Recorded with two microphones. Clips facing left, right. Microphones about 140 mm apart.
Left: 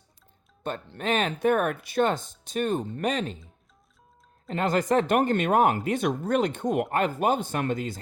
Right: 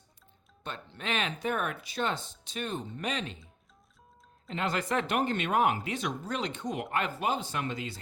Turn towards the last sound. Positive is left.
turn(degrees=50)  # may be behind; listen again after turning